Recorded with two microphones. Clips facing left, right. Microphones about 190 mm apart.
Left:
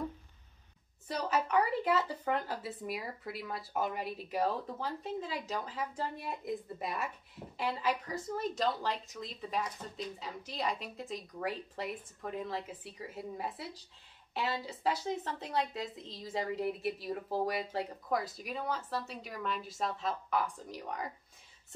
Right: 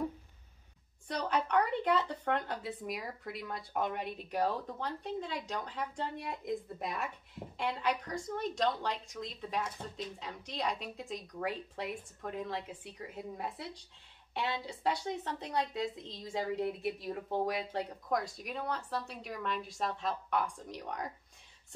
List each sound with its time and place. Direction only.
1.0 s speech: 5° left (ahead or behind)